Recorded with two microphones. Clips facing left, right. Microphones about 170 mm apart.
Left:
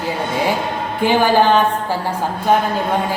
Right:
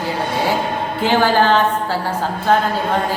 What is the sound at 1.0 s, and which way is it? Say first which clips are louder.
Speech: left 1 dB; 15° left (ahead or behind).